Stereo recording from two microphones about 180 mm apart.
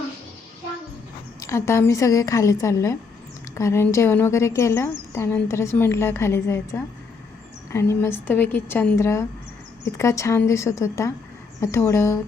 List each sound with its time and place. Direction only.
1.4 s a woman's voice: 15° left (ahead or behind)